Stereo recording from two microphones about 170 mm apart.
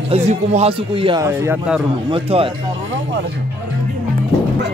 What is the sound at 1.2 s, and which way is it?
Speech, 15° right (ahead or behind).